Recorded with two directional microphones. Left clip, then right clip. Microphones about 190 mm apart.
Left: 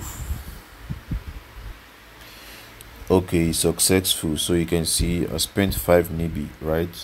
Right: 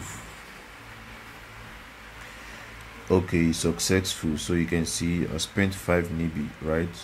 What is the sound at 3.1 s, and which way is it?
Speech, 20° left (ahead or behind).